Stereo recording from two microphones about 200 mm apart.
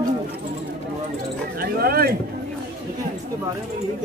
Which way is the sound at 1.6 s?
50° right (ahead or behind).